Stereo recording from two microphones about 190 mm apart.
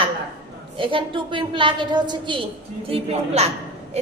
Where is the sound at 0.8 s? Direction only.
25° right (ahead or behind).